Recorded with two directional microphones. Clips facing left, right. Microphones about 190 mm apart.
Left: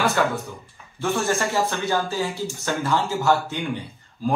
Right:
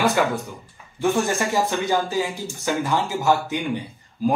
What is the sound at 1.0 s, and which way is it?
Speech, 15° right (ahead or behind).